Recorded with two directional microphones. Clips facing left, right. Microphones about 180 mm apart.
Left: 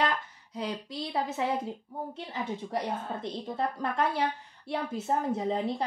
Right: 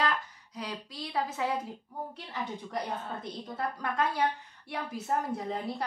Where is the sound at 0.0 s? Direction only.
25° left (ahead or behind).